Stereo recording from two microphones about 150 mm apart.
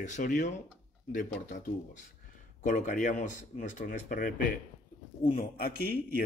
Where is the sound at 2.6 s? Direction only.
60° left (ahead or behind).